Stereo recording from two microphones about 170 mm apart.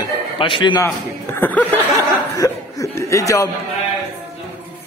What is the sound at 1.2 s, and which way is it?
Speech, 10° left (ahead or behind).